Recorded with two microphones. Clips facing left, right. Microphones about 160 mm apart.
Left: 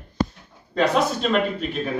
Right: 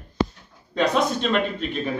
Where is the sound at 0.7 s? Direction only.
Centre (ahead or behind).